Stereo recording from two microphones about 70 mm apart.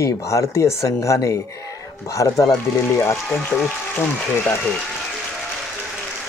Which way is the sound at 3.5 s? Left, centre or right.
Left.